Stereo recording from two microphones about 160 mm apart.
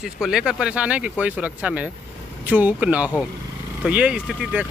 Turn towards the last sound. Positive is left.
turn(degrees=-5)  # may be behind; listen again after turning